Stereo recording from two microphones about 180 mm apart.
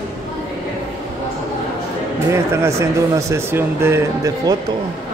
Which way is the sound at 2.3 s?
15° right (ahead or behind).